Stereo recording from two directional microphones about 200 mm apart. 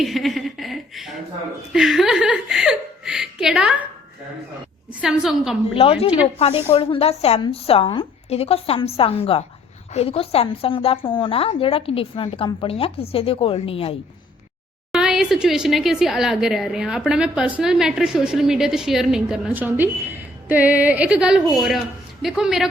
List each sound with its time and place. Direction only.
0.0 s a sound: centre (ahead or behind)
1.7 s a woman's voice: centre (ahead or behind)
4.9 s a woman's voice: 5° right (ahead or behind)
5.7 s a woman's voice: 30° left (ahead or behind)
14.9 s a woman's voice: centre (ahead or behind)